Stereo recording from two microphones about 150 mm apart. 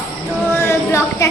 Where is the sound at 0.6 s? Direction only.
20° left (ahead or behind).